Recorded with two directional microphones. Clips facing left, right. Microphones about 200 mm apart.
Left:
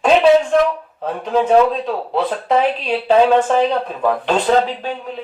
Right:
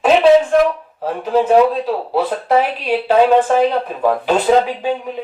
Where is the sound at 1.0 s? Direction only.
5° right (ahead or behind).